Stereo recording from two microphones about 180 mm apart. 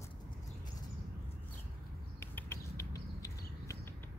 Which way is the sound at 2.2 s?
15° left (ahead or behind).